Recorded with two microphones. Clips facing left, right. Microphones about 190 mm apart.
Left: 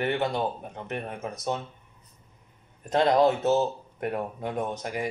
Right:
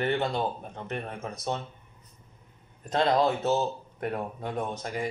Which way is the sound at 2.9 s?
20° left (ahead or behind).